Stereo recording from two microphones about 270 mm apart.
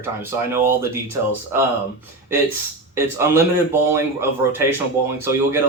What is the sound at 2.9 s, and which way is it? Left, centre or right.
Speech, centre.